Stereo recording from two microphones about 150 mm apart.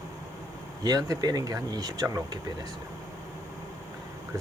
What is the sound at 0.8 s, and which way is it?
Speech, 25° right (ahead or behind).